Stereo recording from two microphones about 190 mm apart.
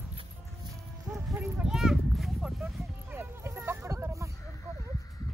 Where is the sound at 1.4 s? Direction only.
Centre (ahead or behind).